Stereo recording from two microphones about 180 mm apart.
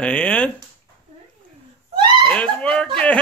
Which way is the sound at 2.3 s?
5° left (ahead or behind).